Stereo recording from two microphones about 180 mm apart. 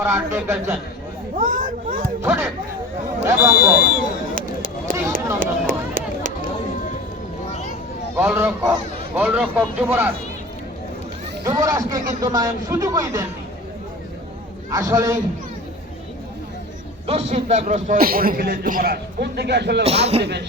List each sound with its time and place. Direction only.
0.0 s speech: 15° right (ahead or behind)
1.4 s a man's voice: 50° right (ahead or behind)
2.2 s speech: 10° right (ahead or behind)
4.9 s a sound: 50° right (ahead or behind)
8.1 s speech: 15° right (ahead or behind)
11.4 s a man's voice: 20° right (ahead or behind)
14.7 s speech: 20° right (ahead or behind)
17.1 s a man's voice: 35° right (ahead or behind); by 19.8 s 70° right (ahead or behind)
19.8 s speech: 35° right (ahead or behind)